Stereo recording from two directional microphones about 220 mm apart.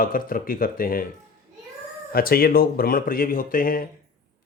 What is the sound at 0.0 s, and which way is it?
Speech, 40° left (ahead or behind).